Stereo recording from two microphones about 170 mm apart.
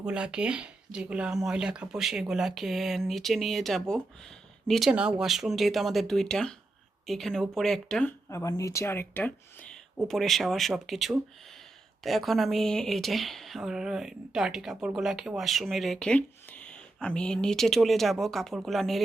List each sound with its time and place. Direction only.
0.0 s speech: 5° right (ahead or behind)
8.3 s speech: 20° left (ahead or behind); by 19.0 s centre (ahead or behind)